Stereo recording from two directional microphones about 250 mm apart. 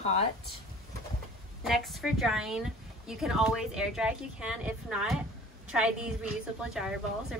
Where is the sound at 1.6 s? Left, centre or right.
Centre.